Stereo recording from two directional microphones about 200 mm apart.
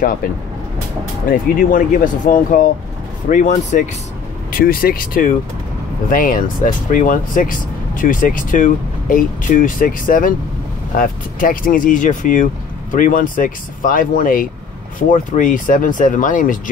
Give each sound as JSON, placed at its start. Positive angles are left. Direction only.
{"t": 1.3, "sound": "speech", "side_deg": 45}